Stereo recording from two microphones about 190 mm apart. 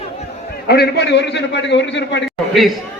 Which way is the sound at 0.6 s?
60° left (ahead or behind).